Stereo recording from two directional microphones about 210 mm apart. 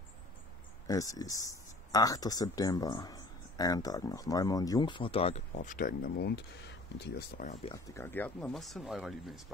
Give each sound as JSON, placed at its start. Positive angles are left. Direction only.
{"t": 0.8, "sound": "speech", "side_deg": 15}
{"t": 7.7, "sound": "speech", "side_deg": 15}